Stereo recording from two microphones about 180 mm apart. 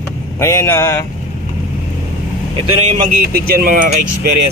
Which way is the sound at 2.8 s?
40° right (ahead or behind).